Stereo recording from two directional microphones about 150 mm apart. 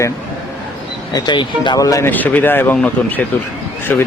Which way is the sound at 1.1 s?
30° left (ahead or behind).